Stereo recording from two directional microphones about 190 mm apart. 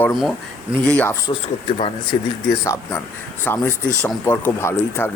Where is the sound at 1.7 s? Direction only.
30° left (ahead or behind).